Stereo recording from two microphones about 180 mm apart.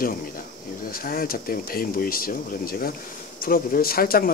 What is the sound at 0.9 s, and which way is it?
Speech, 55° left (ahead or behind).